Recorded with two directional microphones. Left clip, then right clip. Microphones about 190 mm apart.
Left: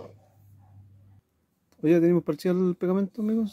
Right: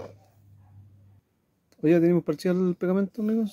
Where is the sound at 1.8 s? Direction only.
10° right (ahead or behind).